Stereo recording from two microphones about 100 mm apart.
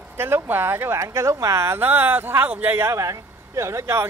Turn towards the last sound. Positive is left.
turn(degrees=-30)  # may be behind; listen again after turning